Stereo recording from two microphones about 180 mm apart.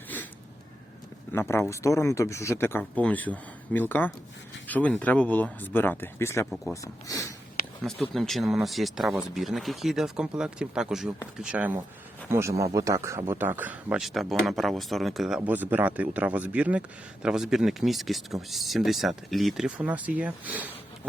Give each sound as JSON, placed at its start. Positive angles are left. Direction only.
{"t": 1.3, "sound": "speech", "side_deg": 15}
{"t": 7.9, "sound": "a man's voice", "side_deg": 5}